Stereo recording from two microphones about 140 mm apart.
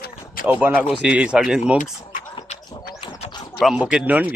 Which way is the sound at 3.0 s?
30° left (ahead or behind).